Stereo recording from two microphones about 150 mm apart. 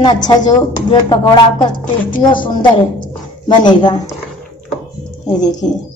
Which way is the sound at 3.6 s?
25° left (ahead or behind).